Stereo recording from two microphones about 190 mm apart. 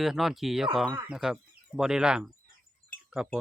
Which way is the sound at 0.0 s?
Centre (ahead or behind).